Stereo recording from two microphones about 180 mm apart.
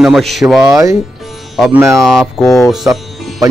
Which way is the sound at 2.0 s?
Centre (ahead or behind).